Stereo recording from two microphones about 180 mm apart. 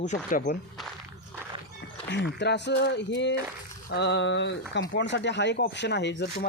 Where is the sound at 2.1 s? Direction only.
80° left.